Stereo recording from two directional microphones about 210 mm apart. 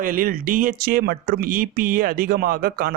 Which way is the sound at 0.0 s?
40° right (ahead or behind).